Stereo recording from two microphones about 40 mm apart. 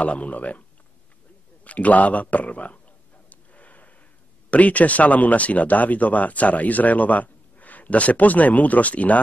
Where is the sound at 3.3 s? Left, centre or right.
Left.